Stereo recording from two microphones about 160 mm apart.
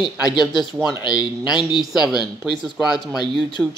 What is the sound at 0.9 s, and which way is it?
Speech, 25° left (ahead or behind).